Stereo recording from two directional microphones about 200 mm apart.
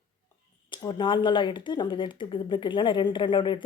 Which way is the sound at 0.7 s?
20° left (ahead or behind).